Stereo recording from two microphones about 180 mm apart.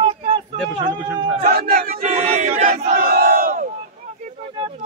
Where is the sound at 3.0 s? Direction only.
60° right (ahead or behind).